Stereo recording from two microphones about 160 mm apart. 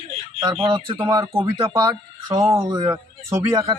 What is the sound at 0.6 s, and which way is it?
Speech, 30° right (ahead or behind).